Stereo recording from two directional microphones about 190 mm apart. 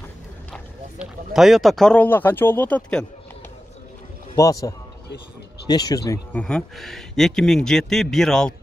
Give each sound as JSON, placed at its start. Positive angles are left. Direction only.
{"t": 0.5, "sound": "speech", "side_deg": 0}
{"t": 4.4, "sound": "a man's voice", "side_deg": 15}
{"t": 6.4, "sound": "speech", "side_deg": 5}